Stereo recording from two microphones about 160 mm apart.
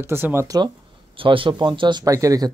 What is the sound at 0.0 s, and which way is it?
Speech, 15° right (ahead or behind).